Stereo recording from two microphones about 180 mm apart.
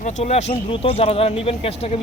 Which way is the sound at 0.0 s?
40° left (ahead or behind).